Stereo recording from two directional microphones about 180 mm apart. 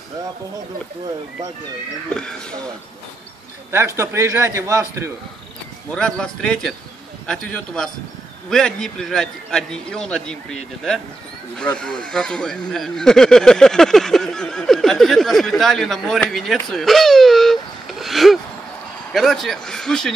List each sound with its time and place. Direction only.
2.1 s speech: 5° left (ahead or behind)
3.7 s a man's voice: 15° right (ahead or behind)
5.9 s speech: 5° left (ahead or behind)